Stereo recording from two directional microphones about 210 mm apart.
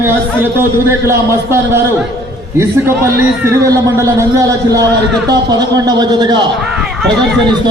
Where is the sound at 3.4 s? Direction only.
15° right (ahead or behind).